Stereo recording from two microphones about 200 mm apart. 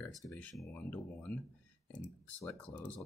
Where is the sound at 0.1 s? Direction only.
Centre (ahead or behind).